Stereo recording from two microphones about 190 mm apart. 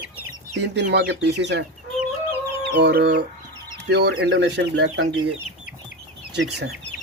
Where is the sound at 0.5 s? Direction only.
60° right (ahead or behind).